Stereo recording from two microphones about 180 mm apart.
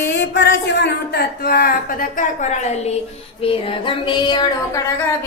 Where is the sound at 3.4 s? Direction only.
30° left (ahead or behind).